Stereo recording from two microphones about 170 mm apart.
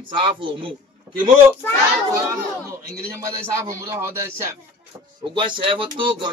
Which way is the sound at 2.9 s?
15° right (ahead or behind).